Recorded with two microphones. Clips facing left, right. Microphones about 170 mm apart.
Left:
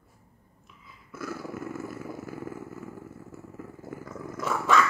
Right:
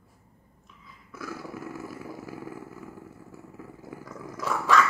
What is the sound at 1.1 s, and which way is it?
Purr, centre (ahead or behind).